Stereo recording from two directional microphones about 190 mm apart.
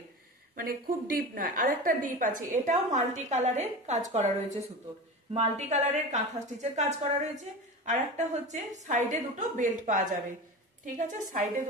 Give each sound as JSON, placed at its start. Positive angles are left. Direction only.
{"t": 0.6, "sound": "a woman's voice", "side_deg": -50}